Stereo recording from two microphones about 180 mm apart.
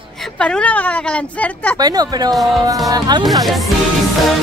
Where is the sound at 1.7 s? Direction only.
20° right (ahead or behind).